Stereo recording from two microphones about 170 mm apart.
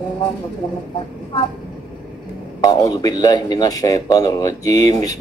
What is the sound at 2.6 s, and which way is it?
A man's voice, 20° left (ahead or behind).